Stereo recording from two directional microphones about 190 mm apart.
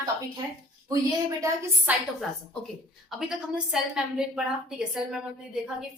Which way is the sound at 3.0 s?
Centre (ahead or behind).